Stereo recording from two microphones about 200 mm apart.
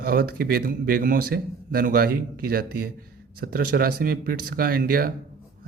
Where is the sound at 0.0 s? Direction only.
50° right (ahead or behind).